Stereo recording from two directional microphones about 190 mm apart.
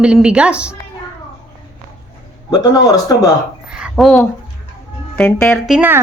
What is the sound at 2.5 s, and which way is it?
Speech, 20° left (ahead or behind).